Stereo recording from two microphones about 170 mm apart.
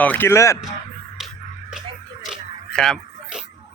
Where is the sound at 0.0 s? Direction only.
10° left (ahead or behind).